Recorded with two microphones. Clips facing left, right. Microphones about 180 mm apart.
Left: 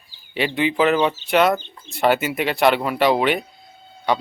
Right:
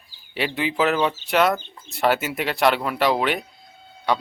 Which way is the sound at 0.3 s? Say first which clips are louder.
Left 3 dB; centre (ahead or behind).